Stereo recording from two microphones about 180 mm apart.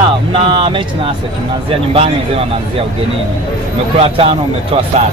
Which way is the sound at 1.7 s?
35° right (ahead or behind).